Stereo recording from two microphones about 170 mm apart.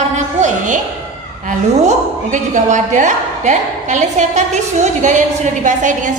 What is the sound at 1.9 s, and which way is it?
A woman's voice, 45° right (ahead or behind).